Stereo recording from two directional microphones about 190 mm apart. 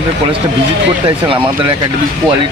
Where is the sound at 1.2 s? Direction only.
25° right (ahead or behind).